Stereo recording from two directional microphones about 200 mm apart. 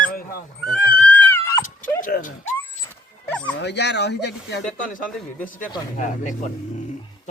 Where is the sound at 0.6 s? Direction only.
5° left (ahead or behind).